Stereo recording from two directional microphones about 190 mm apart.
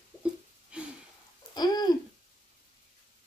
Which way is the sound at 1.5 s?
20° left (ahead or behind).